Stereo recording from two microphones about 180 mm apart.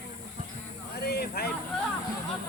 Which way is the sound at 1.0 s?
60° left (ahead or behind).